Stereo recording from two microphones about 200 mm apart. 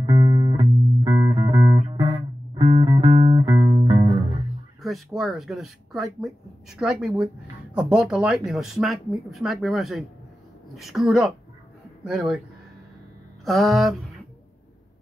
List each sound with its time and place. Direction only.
0.0 s music: 20° right (ahead or behind)
3.1 s music: 35° right (ahead or behind)
3.3 s music: 20° right (ahead or behind)
4.8 s speech: centre (ahead or behind)
13.5 s a sound: centre (ahead or behind)